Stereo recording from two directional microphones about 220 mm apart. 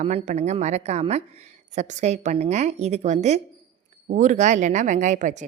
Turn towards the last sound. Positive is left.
turn(degrees=-35)  # may be behind; listen again after turning